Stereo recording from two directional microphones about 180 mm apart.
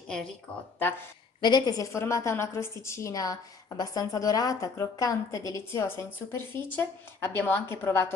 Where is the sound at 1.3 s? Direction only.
25° left (ahead or behind).